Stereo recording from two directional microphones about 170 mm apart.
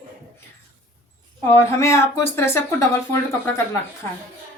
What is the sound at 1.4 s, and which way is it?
Speech, 15° left (ahead or behind).